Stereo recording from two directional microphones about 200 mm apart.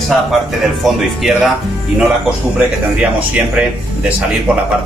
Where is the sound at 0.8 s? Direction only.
Centre (ahead or behind).